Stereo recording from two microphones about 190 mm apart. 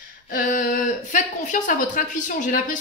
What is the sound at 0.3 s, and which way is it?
Speech, 45° left (ahead or behind).